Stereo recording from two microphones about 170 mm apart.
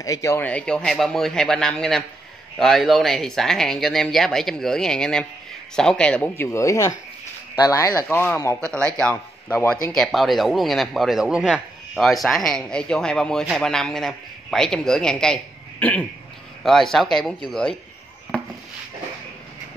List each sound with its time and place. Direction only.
0.0 s speech: 20° left (ahead or behind); by 17.7 s 5° left (ahead or behind)